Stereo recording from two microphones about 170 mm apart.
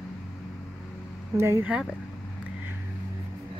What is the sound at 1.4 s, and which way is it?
Speech, 15° right (ahead or behind).